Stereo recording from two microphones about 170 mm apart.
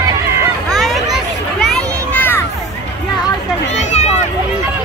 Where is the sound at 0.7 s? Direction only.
Centre (ahead or behind).